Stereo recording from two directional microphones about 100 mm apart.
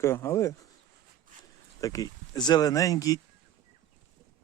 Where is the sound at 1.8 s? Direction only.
35° left (ahead or behind).